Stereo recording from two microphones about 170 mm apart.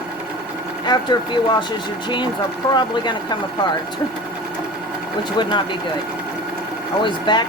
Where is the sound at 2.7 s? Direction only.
25° left (ahead or behind).